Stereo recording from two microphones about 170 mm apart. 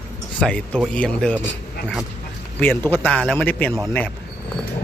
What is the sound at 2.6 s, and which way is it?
Speech, 10° left (ahead or behind).